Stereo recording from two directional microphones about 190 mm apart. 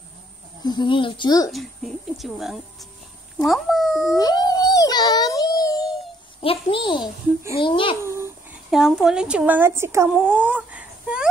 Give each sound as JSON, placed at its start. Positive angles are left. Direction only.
{"t": 0.7, "sound": "speech", "side_deg": 25}
{"t": 1.5, "sound": "speech", "side_deg": 0}
{"t": 4.2, "sound": "music", "side_deg": 20}
{"t": 6.4, "sound": "speech", "side_deg": 30}
{"t": 8.0, "sound": "a sound", "side_deg": -15}
{"t": 8.6, "sound": "speech", "side_deg": 0}